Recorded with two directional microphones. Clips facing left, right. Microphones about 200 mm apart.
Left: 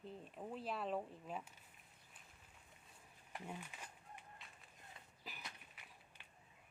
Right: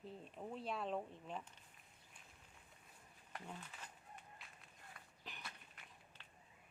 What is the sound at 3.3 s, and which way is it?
Speech, 10° left (ahead or behind).